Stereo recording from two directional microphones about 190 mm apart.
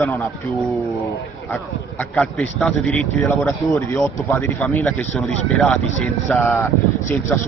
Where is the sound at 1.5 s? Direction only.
5° left (ahead or behind).